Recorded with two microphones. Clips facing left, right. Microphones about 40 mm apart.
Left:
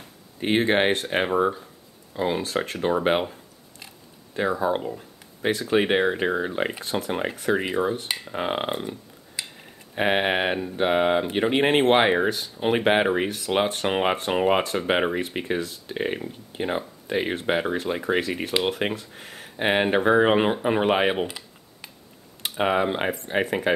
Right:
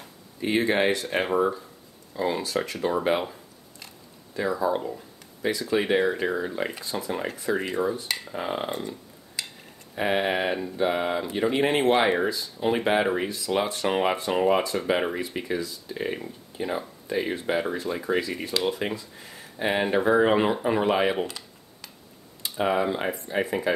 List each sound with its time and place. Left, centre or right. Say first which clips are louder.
0.4 s speech: left 2 dB; left
2.4 s speech: left 2 dB; left
4.3 s speech: left 2 dB; left
6.8 s speech: left 3 dB; left
7.5 s speech: left 2 dB; left
7.8 s speech: left 2 dB; left
8.3 s speech: left 4 dB; left
8.7 s a sound: left 2 dB; left
9.9 s speech: left 2 dB; left
12.3 s speech: left 3 dB; left
12.5 s speech: left 2 dB; left
18.9 s speech: left 2 dB; left
21.2 s computer keyboard: left 2 dB; left
22.4 s speech: left 2 dB; left